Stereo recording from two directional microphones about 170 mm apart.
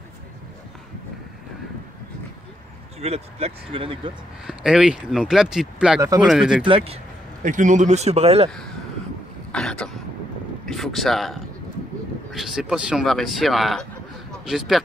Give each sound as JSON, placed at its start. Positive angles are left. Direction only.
{"t": 3.0, "sound": "speech", "side_deg": -35}
{"t": 4.5, "sound": "speech", "side_deg": -5}
{"t": 5.9, "sound": "speech", "side_deg": -20}
{"t": 6.2, "sound": "speech", "side_deg": -5}
{"t": 6.6, "sound": "speech", "side_deg": -35}
{"t": 7.4, "sound": "speech", "side_deg": -45}
{"t": 8.5, "sound": "speech", "side_deg": 5}
{"t": 9.5, "sound": "a sound", "side_deg": 5}
{"t": 10.6, "sound": "speech", "side_deg": 0}